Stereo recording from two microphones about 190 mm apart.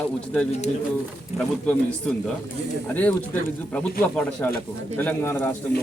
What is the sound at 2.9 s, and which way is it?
Speech, 10° left (ahead or behind).